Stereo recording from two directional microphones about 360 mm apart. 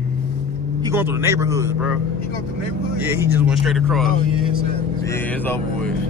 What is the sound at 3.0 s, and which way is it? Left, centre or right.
Speech, centre.